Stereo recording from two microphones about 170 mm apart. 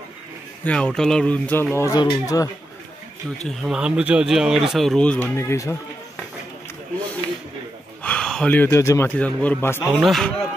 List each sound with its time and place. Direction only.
0.7 s speech: 5° left (ahead or behind)
1.7 s speech: 20° left (ahead or behind)
3.4 s speech: 5° right (ahead or behind); by 5.8 s 15° left (ahead or behind)
8.0 s a man's voice: 5° left (ahead or behind)
9.8 s speech: centre (ahead or behind)